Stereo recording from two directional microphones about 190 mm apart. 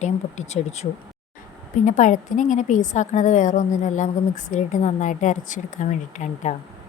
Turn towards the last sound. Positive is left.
turn(degrees=40)  # may be behind; listen again after turning